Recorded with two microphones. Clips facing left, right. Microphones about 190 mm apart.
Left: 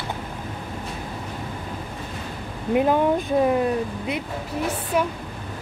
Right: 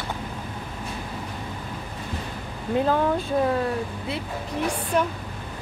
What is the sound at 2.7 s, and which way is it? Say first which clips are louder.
Speech: left 3 dB; 15° left (ahead or behind).